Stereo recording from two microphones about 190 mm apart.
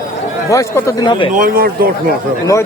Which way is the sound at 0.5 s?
15° left (ahead or behind).